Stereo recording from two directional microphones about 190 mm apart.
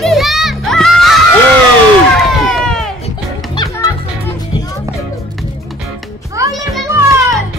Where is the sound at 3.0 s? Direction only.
20° left (ahead or behind).